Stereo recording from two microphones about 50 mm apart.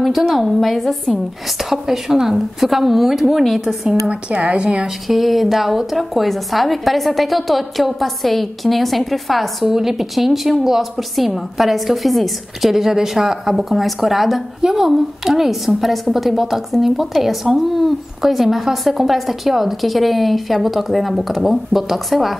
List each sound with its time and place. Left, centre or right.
0.3 s a woman's voice: centre
4.1 s a woman's voice: right
5.0 s a woman's voice: centre